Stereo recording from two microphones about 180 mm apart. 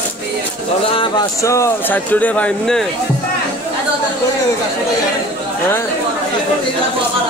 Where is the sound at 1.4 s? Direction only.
15° left (ahead or behind).